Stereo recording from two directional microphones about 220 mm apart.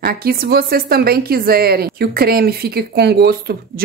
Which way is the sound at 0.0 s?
45° right (ahead or behind).